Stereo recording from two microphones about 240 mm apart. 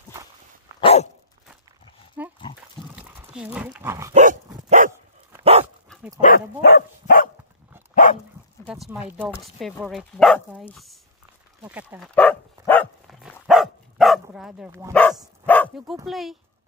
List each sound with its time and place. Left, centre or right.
0.7 s dog: left
2.2 s pig: centre
3.0 s speech: centre
4.1 s dog: right
6.2 s dog: left
8.6 s speech: centre
12.2 s dog: centre
14.9 s speech: centre